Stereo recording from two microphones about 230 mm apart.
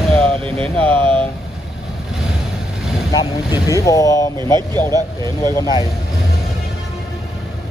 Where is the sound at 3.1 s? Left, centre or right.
Centre.